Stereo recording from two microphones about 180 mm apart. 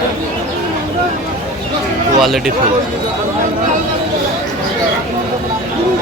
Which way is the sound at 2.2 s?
Centre (ahead or behind).